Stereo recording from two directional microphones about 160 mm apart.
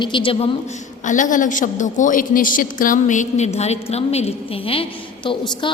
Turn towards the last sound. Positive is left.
turn(degrees=30)  # may be behind; listen again after turning